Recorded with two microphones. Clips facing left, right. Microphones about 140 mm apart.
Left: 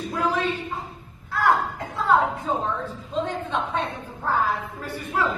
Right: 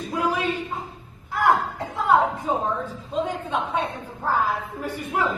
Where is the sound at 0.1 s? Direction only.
10° right (ahead or behind).